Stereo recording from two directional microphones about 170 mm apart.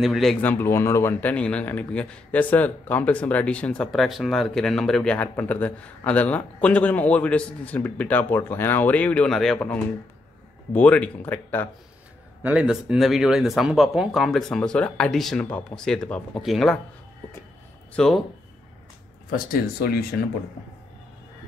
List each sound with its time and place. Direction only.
0.0 s speech: centre (ahead or behind)
12.4 s speech: 5° right (ahead or behind)
17.9 s speech: centre (ahead or behind)
19.3 s speech: 65° left (ahead or behind)